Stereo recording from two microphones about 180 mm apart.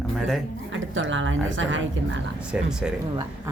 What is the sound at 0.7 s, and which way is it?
A woman's voice, 90° right.